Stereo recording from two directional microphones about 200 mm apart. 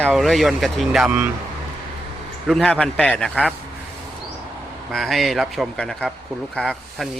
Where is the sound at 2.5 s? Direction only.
Centre (ahead or behind).